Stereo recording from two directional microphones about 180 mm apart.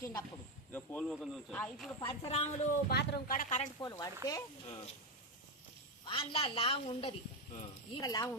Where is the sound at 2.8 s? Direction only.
65° left (ahead or behind).